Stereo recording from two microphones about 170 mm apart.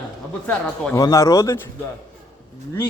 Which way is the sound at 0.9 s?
20° left (ahead or behind).